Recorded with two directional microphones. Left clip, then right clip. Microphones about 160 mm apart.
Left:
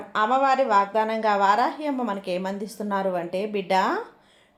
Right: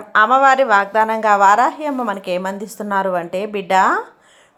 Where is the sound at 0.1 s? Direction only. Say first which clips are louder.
Right 9 dB; 15° right (ahead or behind).